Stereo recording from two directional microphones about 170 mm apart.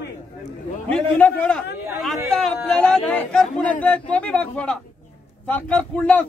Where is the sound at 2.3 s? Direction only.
5° left (ahead or behind).